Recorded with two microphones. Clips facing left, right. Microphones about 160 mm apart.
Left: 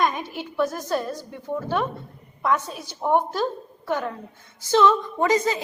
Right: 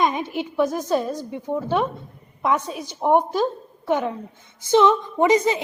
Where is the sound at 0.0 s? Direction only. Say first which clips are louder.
Right 3 dB; 20° right (ahead or behind).